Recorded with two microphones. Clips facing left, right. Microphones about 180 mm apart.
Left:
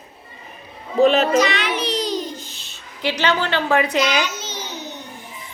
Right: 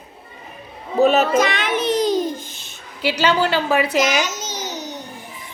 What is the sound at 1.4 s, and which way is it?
Babbling, 50° right (ahead or behind).